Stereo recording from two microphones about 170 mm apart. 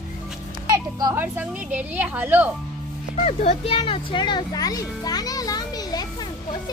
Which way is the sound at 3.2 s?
40° left (ahead or behind).